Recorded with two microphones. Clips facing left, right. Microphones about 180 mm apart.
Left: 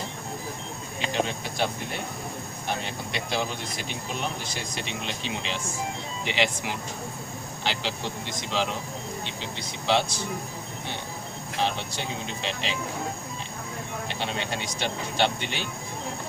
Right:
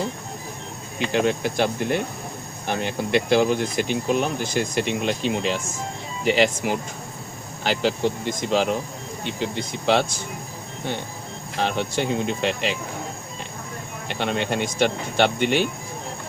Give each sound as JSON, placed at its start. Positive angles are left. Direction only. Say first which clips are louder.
{"t": 0.9, "sound": "speech", "louder": "right 7 dB", "side_deg": -60}
{"t": 11.6, "sound": "speech", "louder": "right 6 dB", "side_deg": -55}
{"t": 14.1, "sound": "speech", "louder": "right 9 dB", "side_deg": -55}